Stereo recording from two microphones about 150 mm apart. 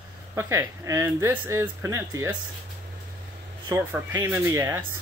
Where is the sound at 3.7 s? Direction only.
15° right (ahead or behind).